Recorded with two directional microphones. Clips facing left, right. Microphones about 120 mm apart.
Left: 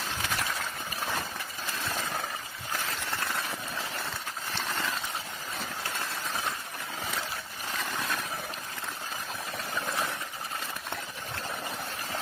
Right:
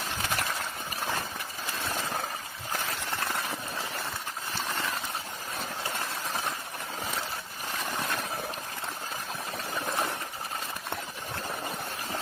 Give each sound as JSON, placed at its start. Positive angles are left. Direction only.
{"t": 0.1, "sound": "clip-clop", "side_deg": -55}